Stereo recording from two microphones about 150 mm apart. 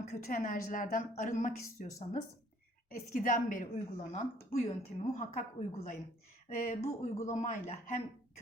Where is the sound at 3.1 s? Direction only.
60° left (ahead or behind).